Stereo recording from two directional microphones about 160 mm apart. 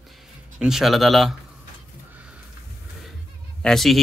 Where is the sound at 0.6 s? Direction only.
Centre (ahead or behind).